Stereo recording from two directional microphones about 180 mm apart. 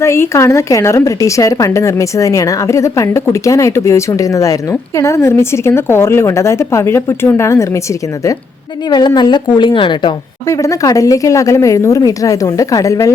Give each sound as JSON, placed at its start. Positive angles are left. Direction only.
{"t": 0.0, "sound": "a woman's voice", "side_deg": 15}
{"t": 8.9, "sound": "a woman's voice", "side_deg": 25}